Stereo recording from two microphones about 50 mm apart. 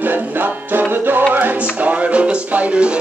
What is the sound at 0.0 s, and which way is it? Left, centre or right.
Music, right.